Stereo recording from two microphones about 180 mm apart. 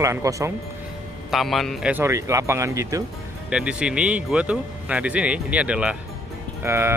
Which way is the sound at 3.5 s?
5° right (ahead or behind).